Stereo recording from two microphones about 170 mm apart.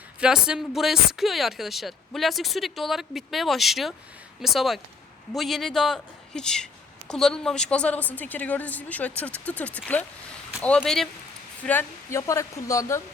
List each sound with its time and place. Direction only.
0.2 s a woman's voice: 5° right (ahead or behind); by 13.0 s 20° left (ahead or behind)